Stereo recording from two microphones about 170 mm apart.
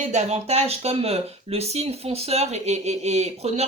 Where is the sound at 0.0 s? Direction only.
45° right (ahead or behind).